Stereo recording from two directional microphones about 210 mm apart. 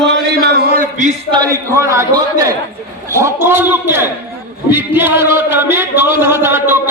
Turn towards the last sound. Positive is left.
turn(degrees=-10)  # may be behind; listen again after turning